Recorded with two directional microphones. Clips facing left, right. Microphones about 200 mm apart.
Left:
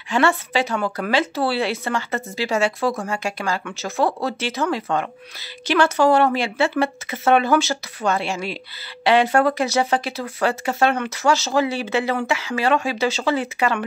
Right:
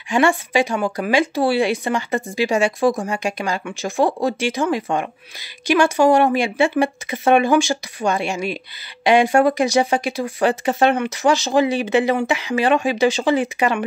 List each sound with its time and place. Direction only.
0.1 s speech: 15° right (ahead or behind)